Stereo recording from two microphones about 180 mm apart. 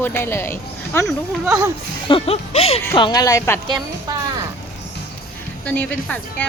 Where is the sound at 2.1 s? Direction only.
35° left (ahead or behind).